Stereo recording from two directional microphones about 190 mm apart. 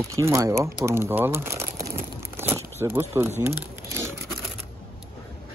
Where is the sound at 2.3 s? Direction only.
10° right (ahead or behind).